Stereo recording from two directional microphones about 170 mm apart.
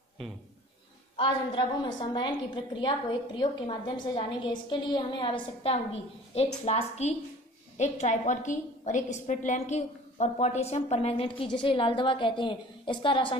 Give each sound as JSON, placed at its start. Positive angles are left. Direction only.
{"t": 1.1, "sound": "a woman's voice", "side_deg": 30}